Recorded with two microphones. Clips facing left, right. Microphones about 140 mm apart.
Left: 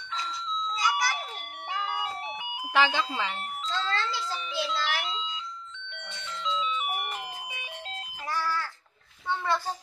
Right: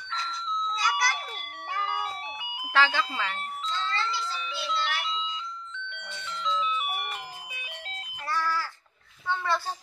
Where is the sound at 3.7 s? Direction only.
90° left.